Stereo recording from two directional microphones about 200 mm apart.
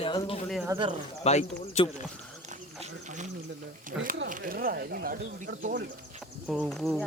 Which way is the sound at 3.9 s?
5° right (ahead or behind).